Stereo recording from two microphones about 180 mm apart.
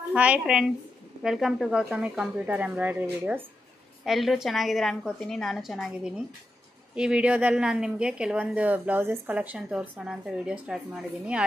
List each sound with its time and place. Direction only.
0.1 s speech: 5° right (ahead or behind)